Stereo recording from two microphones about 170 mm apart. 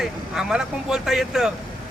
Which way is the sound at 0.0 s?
5° right (ahead or behind).